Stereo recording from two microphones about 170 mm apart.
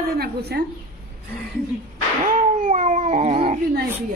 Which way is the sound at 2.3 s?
50° right (ahead or behind).